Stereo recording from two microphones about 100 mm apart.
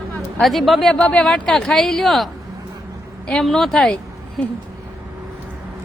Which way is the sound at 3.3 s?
5° left (ahead or behind).